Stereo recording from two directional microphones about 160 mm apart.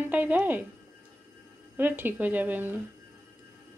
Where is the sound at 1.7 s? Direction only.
10° right (ahead or behind).